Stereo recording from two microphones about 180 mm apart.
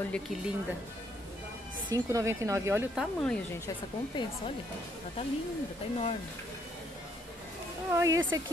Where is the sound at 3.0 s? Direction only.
5° left (ahead or behind).